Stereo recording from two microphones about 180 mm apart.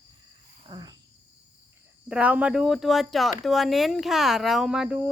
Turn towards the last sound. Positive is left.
turn(degrees=-5)  # may be behind; listen again after turning